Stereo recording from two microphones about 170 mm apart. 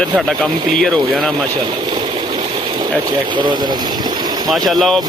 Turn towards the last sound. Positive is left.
turn(degrees=0)  # may be behind; listen again after turning